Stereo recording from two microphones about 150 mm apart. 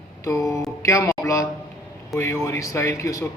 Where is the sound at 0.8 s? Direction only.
20° left (ahead or behind).